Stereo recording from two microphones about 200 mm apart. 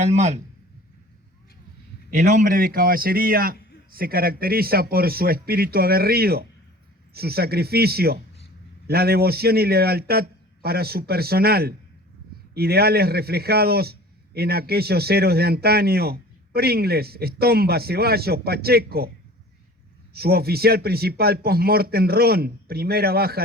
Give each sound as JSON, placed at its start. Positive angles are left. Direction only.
{"t": 0.0, "sound": "speech", "side_deg": -35}
{"t": 2.0, "sound": "a man's voice", "side_deg": -50}
{"t": 2.3, "sound": "speech", "side_deg": -40}
{"t": 20.1, "sound": "speech", "side_deg": -50}